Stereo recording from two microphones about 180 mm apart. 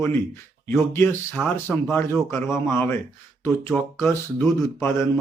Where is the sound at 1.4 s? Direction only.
5° right (ahead or behind).